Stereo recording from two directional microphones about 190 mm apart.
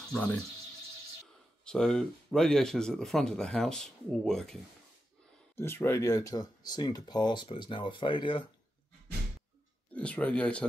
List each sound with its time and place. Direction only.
0.1 s speech: 5° left (ahead or behind)
1.6 s speech: 5° left (ahead or behind)
5.6 s speech: 10° left (ahead or behind)
9.9 s speech: 5° left (ahead or behind)